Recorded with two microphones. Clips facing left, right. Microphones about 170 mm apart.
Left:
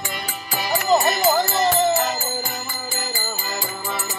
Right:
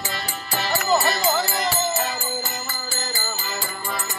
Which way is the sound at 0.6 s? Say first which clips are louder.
Left 3 dB; 15° left (ahead or behind).